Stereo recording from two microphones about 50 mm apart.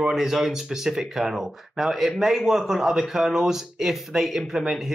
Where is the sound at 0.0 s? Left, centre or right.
Centre.